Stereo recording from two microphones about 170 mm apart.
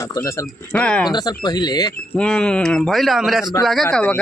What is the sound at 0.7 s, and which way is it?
Speech, 5° left (ahead or behind).